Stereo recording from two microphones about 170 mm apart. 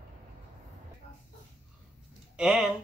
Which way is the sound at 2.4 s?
Centre (ahead or behind).